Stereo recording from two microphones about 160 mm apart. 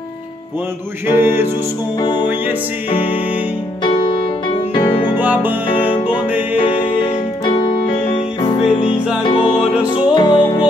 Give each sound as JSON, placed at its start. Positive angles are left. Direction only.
{"t": 1.1, "sound": "music", "side_deg": -15}
{"t": 2.0, "sound": "music", "side_deg": 25}
{"t": 3.8, "sound": "music", "side_deg": 30}
{"t": 5.1, "sound": "music", "side_deg": -10}
{"t": 6.5, "sound": "music", "side_deg": 35}